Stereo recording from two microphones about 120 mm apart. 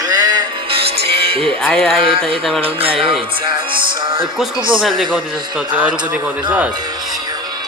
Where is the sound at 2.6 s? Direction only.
50° right (ahead or behind).